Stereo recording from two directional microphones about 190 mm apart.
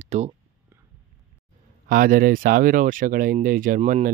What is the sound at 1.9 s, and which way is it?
Speech, 50° right (ahead or behind).